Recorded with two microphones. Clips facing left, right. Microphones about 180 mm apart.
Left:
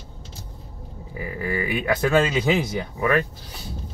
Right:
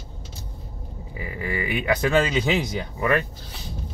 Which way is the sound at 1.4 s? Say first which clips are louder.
Left 1 dB; 15° right (ahead or behind).